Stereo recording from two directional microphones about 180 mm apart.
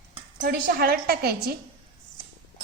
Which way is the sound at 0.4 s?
55° right (ahead or behind).